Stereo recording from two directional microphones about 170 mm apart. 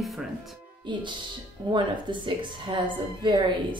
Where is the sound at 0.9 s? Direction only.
25° right (ahead or behind).